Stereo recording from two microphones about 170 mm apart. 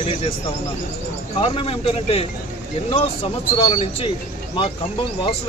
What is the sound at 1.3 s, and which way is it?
Speech, 30° left (ahead or behind).